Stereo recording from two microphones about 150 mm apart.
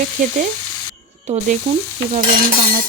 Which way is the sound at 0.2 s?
60° right (ahead or behind).